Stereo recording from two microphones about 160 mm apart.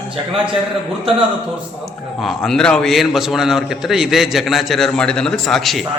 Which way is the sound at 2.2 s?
Centre (ahead or behind).